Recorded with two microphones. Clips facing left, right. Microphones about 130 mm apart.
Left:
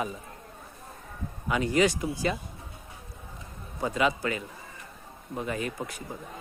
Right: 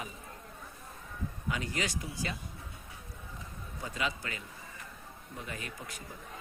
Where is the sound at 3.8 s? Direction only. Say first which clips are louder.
Left 10 dB; 80° left.